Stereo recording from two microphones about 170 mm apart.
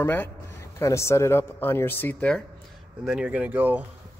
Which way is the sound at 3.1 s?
5° right (ahead or behind).